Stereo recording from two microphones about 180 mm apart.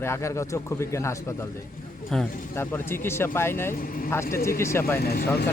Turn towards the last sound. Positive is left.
turn(degrees=55)  # may be behind; listen again after turning